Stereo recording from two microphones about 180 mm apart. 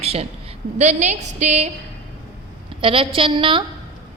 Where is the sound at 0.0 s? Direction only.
35° right (ahead or behind).